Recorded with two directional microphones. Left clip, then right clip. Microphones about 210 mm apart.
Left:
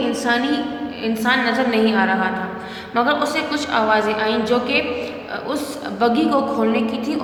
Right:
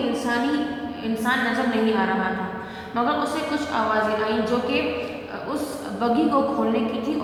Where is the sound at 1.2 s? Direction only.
45° left (ahead or behind).